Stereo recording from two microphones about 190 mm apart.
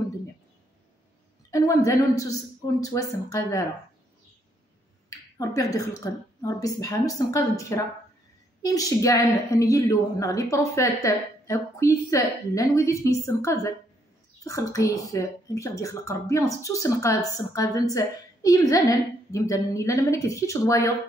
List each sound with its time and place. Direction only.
1.5 s a sound: 15° left (ahead or behind)
1.9 s speech: 15° left (ahead or behind)
5.4 s speech: 15° left (ahead or behind)